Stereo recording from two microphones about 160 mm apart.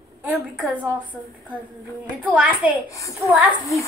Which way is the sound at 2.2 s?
10° right (ahead or behind).